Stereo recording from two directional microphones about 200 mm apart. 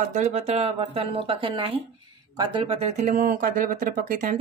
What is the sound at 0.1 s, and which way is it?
Speech, 35° right (ahead or behind).